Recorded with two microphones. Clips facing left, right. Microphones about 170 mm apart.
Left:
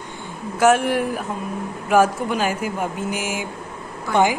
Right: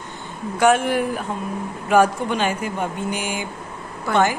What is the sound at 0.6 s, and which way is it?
Speech, centre (ahead or behind).